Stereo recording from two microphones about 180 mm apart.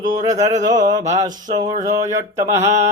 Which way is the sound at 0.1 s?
20° right (ahead or behind).